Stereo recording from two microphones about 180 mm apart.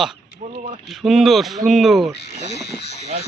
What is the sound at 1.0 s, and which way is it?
A man's voice, centre (ahead or behind).